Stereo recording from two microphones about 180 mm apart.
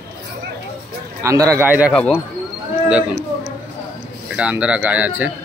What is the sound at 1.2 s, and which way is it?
Speech, 15° right (ahead or behind).